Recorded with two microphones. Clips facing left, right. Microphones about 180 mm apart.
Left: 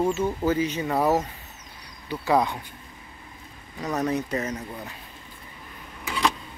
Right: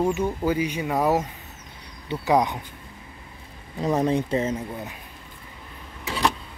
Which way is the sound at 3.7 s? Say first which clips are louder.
Right 4 dB; 25° right (ahead or behind).